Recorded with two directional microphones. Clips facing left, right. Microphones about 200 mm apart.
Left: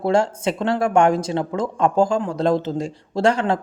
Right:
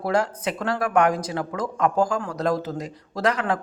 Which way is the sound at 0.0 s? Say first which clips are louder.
Left 5 dB; 25° left (ahead or behind).